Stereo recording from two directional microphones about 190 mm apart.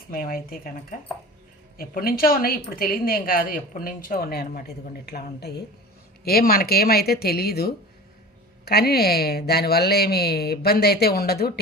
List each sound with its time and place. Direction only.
0.1 s a woman's voice: 50° left (ahead or behind)